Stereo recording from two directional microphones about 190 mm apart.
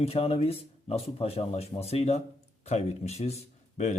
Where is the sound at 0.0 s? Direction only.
30° left (ahead or behind).